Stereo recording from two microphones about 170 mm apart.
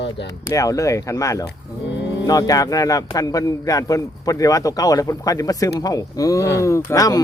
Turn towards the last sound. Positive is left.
turn(degrees=20)  # may be behind; listen again after turning